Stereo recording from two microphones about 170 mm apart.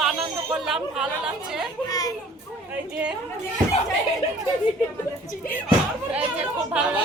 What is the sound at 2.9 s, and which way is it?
Speech, 5° right (ahead or behind).